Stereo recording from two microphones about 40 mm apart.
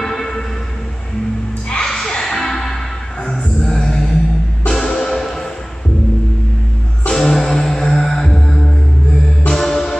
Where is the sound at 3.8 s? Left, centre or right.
Centre.